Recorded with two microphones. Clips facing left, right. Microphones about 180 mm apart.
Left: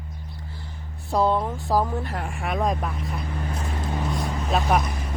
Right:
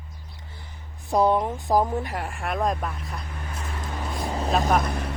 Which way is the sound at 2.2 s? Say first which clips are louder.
Left 1 dB; centre (ahead or behind).